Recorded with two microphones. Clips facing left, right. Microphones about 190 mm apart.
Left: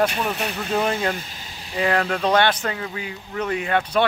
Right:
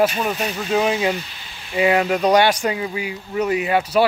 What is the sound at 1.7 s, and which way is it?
Speech, 10° right (ahead or behind).